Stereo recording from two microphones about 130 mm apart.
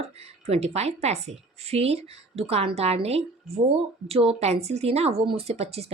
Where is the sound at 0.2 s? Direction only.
55° right (ahead or behind).